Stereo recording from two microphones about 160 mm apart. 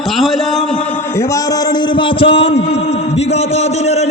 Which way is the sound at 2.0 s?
35° left (ahead or behind).